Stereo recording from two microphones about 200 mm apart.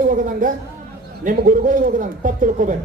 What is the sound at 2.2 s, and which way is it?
Speech, 40° right (ahead or behind).